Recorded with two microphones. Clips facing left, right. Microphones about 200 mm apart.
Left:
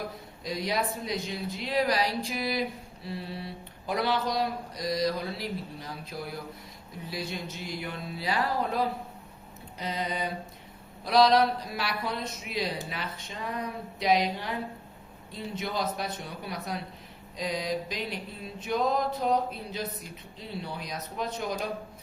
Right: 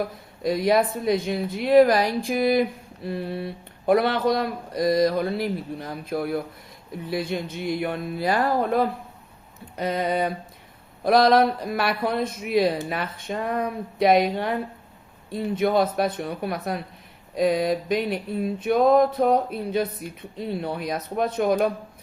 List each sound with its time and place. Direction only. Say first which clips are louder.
0.4 s speech: right 10 dB; 55° right (ahead or behind)